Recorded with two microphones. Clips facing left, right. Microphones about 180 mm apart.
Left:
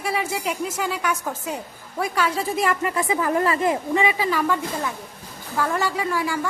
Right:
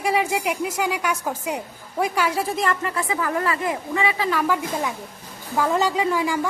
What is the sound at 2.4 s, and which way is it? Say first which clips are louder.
Speech: left 1 dB; 5° left (ahead or behind).